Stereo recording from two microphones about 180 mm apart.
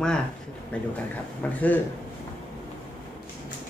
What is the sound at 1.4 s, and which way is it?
Speech, 10° left (ahead or behind).